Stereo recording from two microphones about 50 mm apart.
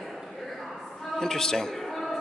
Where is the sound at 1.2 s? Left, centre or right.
Centre.